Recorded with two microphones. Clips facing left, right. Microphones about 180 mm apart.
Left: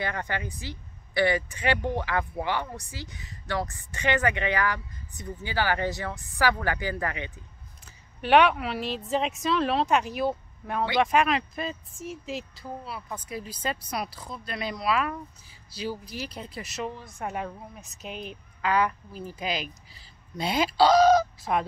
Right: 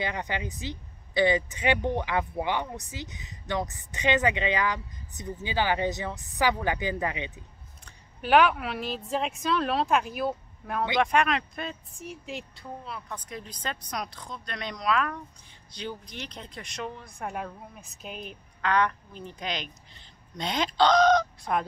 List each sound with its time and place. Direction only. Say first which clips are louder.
0.0 s speech: even; 15° right (ahead or behind)
7.8 s speech: left 2 dB; centre (ahead or behind)